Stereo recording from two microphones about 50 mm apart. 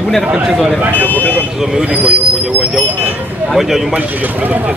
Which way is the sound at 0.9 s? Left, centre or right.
Left.